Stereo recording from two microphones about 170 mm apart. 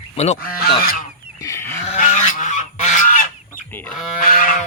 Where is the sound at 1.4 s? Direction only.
15° left (ahead or behind).